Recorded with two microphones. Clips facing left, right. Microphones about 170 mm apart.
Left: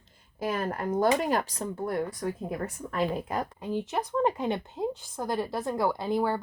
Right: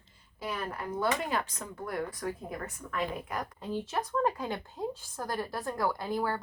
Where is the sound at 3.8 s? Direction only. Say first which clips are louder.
Left 3 dB; 20° left (ahead or behind).